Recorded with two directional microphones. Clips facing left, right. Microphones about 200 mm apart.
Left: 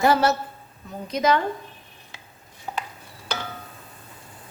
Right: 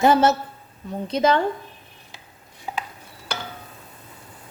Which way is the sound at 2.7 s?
10° right (ahead or behind).